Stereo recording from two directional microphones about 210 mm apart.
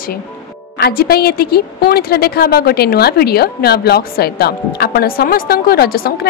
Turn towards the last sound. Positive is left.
turn(degrees=45)  # may be behind; listen again after turning